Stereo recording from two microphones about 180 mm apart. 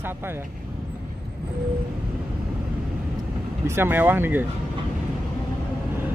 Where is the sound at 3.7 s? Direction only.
10° right (ahead or behind).